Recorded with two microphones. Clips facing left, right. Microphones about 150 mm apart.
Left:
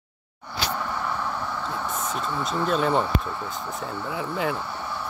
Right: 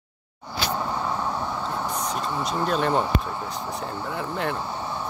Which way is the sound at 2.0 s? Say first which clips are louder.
Right 1 dB; centre (ahead or behind).